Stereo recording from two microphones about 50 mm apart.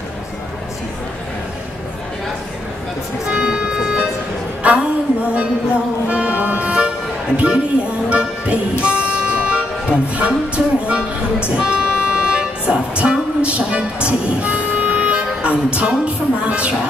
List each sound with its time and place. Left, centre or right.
3.3 s music: centre
4.6 s a sound: right
6.0 s music: right
7.3 s speech: right
11.5 s vehicle: centre
13.4 s a woman's voice: right